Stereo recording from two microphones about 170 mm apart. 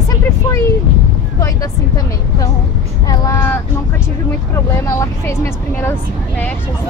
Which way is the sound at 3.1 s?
15° left (ahead or behind).